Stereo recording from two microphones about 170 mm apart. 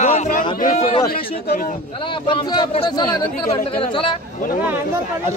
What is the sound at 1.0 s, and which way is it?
Speech, 60° left (ahead or behind).